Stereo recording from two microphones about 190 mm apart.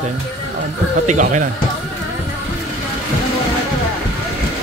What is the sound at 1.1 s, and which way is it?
Speech, 40° right (ahead or behind).